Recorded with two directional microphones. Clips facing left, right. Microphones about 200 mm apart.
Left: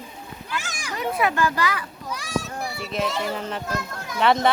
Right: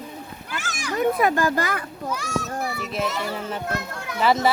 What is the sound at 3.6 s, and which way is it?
Speech, 65° right (ahead or behind).